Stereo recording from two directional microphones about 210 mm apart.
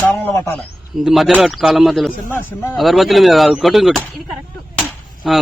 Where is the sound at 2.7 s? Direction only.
Centre (ahead or behind).